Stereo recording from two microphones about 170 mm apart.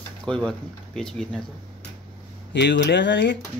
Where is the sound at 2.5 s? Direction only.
85° left.